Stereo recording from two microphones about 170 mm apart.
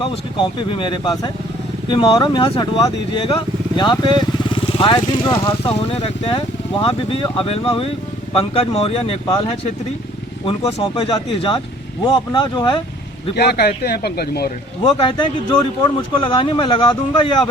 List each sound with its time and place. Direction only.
0.7 s speech: 30° left (ahead or behind)
13.3 s speech: 70° left (ahead or behind)
14.8 s speech: 30° left (ahead or behind)